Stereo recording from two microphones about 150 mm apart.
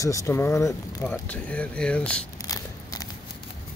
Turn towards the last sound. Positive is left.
turn(degrees=25)  # may be behind; listen again after turning